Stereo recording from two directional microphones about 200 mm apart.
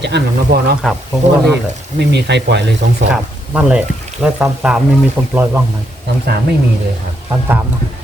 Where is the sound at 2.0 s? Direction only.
55° right (ahead or behind).